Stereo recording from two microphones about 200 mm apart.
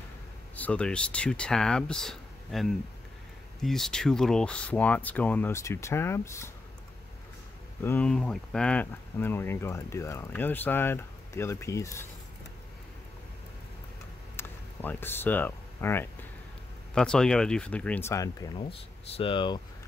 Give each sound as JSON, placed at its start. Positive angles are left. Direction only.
{"t": 0.6, "sound": "speech", "side_deg": 5}
{"t": 7.8, "sound": "speech", "side_deg": 10}
{"t": 14.3, "sound": "a sound", "side_deg": 10}
{"t": 16.9, "sound": "speech", "side_deg": 5}
{"t": 18.6, "sound": "speech", "side_deg": 30}